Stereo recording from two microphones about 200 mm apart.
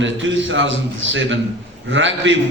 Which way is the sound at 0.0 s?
70° right (ahead or behind).